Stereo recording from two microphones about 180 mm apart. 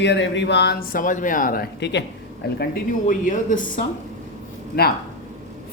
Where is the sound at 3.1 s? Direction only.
45° left (ahead or behind).